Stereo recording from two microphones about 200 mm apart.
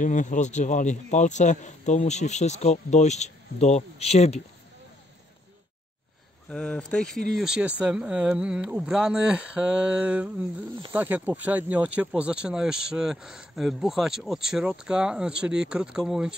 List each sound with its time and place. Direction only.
0.0 s a man's voice: 40° left (ahead or behind)
6.5 s speech: 5° left (ahead or behind)